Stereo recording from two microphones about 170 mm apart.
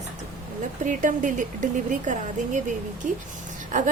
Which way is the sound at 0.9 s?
50° right (ahead or behind).